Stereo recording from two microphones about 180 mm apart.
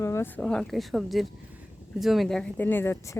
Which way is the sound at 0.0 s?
15° left (ahead or behind).